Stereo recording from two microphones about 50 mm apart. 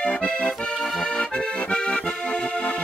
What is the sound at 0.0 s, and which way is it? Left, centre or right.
Accordion, centre.